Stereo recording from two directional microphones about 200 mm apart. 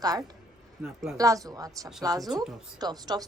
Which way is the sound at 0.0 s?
20° right (ahead or behind).